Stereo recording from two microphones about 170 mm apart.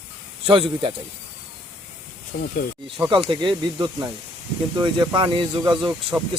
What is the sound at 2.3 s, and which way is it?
Speech, 45° left (ahead or behind).